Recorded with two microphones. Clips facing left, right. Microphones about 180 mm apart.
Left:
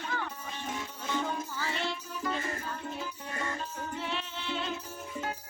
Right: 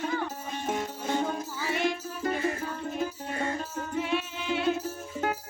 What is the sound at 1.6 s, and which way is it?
Music, 15° right (ahead or behind).